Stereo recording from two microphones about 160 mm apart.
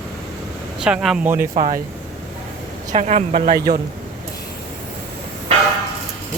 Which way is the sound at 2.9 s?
45° right (ahead or behind).